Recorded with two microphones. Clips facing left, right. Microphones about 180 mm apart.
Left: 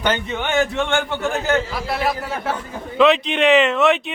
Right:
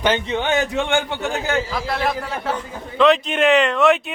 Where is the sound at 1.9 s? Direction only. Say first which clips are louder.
Left 3 dB; 5° left (ahead or behind).